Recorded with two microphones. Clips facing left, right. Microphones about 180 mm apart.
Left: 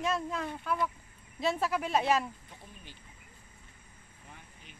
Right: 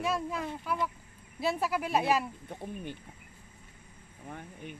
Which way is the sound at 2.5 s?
55° right (ahead or behind).